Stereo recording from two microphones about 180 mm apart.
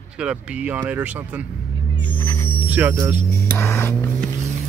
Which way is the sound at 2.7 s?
15° right (ahead or behind).